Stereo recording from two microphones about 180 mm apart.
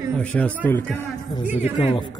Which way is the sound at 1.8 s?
25° left (ahead or behind).